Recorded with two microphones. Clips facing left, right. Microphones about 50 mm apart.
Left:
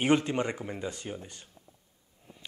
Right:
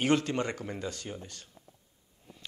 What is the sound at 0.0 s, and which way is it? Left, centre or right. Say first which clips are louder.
A man's voice: left 2 dB; centre.